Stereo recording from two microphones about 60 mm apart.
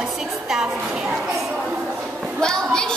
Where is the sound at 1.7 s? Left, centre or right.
Centre.